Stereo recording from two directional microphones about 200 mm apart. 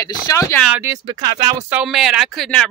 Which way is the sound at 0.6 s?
10° right (ahead or behind).